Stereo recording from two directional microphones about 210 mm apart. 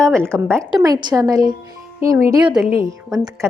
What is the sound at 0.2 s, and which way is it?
Speech, 10° right (ahead or behind).